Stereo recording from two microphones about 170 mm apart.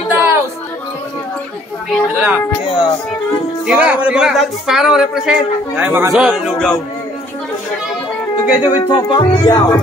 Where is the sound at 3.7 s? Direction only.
10° right (ahead or behind).